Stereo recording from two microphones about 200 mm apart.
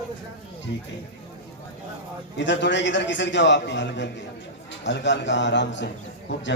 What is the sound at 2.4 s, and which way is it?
A man's voice, 65° left (ahead or behind).